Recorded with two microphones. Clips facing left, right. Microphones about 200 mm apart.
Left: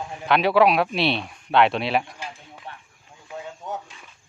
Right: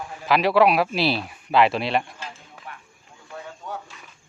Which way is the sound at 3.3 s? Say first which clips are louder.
Left 2 dB; 20° left (ahead or behind).